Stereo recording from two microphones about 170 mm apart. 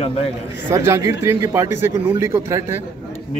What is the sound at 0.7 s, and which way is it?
A man's voice, 15° right (ahead or behind).